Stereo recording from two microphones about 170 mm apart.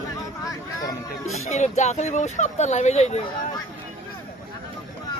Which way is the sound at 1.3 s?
40° left (ahead or behind).